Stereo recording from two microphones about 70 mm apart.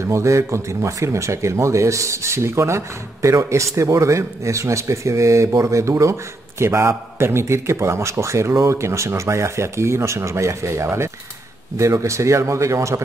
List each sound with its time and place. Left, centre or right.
0.0 s speech: right